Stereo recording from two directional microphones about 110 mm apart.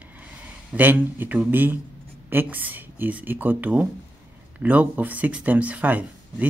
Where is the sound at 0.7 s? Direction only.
15° right (ahead or behind).